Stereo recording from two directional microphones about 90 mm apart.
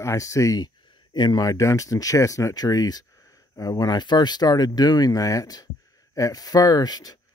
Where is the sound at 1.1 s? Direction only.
50° left (ahead or behind).